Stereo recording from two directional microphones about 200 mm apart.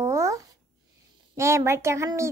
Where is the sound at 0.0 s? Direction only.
15° right (ahead or behind).